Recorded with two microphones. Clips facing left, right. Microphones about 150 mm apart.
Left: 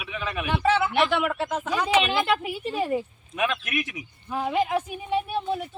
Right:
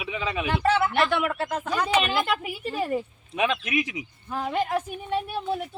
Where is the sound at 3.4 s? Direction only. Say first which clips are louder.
Right 2 dB; 25° right (ahead or behind).